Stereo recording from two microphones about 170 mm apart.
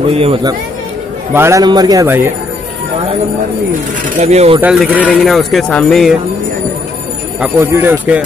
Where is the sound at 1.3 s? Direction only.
15° right (ahead or behind).